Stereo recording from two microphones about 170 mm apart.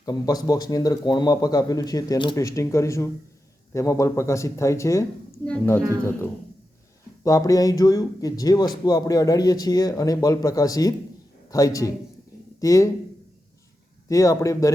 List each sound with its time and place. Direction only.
0.0 s speech: 20° left (ahead or behind)
7.3 s speech: 20° left (ahead or behind)
14.1 s speech: 20° left (ahead or behind)